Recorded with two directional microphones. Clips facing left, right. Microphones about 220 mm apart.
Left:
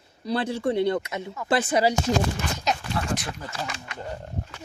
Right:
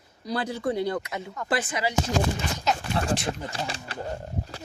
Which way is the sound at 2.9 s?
30° right (ahead or behind).